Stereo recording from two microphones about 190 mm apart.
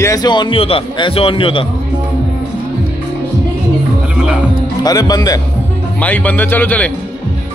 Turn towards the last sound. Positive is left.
turn(degrees=10)  # may be behind; listen again after turning